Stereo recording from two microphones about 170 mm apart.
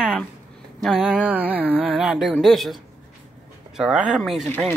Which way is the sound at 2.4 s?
Centre (ahead or behind).